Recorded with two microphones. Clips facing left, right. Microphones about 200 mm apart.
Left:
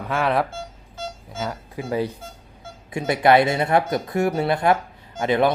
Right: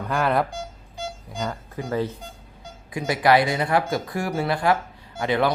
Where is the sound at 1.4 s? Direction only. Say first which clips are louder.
Left 1 dB; 5° left (ahead or behind).